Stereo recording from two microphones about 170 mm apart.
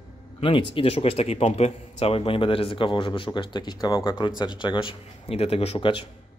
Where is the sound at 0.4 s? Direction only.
30° left (ahead or behind).